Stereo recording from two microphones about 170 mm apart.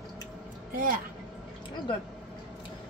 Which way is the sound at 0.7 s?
55° right (ahead or behind).